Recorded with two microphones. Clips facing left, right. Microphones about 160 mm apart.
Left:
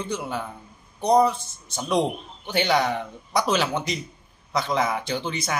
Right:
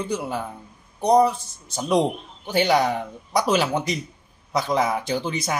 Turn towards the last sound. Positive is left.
turn(degrees=-10)  # may be behind; listen again after turning